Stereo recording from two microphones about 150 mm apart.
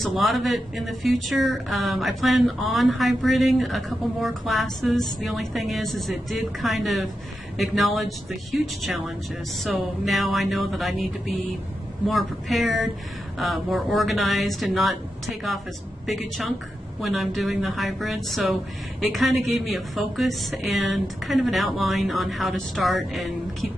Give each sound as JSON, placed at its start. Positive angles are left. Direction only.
{"t": 0.0, "sound": "speech", "side_deg": 0}